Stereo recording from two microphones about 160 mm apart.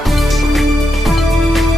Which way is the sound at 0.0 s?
Centre (ahead or behind).